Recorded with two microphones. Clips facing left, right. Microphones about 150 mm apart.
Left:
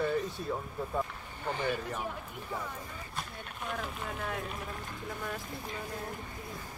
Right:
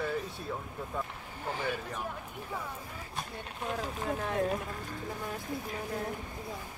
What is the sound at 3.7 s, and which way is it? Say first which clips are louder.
Speech: right 4 dB; 35° right (ahead or behind).